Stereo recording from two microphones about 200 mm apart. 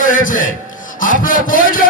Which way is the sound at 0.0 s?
40° left (ahead or behind).